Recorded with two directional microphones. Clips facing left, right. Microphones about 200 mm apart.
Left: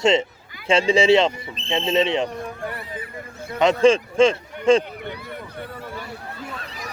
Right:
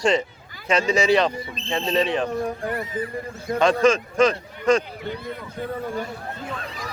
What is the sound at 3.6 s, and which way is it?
A man's voice, 25° left (ahead or behind).